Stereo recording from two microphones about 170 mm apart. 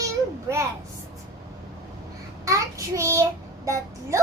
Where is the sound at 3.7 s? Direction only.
15° right (ahead or behind).